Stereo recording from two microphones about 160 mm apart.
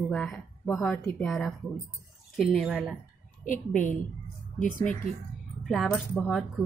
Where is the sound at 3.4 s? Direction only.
55° left (ahead or behind).